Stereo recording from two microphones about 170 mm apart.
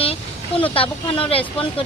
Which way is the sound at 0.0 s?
35° left (ahead or behind).